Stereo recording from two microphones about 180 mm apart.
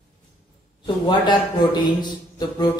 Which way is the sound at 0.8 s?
25° left (ahead or behind).